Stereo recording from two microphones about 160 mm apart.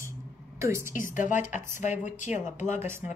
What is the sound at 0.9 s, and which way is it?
Speech, 55° left (ahead or behind).